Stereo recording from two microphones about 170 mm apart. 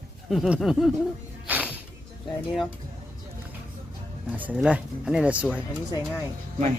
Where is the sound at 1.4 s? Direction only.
10° right (ahead or behind).